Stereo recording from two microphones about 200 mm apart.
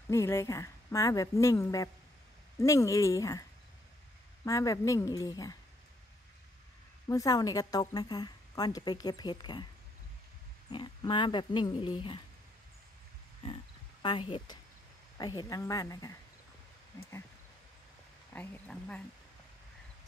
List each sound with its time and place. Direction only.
0.1 s a woman's voice: 15° left (ahead or behind)
4.5 s a woman's voice: 15° left (ahead or behind)
7.1 s speech: 20° left (ahead or behind)
10.7 s speech: 25° left (ahead or behind)
14.0 s a woman's voice: 25° left (ahead or behind)
18.3 s a woman's voice: 10° left (ahead or behind)